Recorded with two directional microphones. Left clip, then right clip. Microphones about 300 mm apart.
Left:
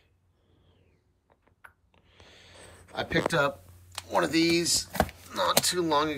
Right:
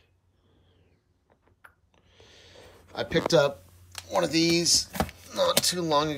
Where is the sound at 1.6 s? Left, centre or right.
Centre.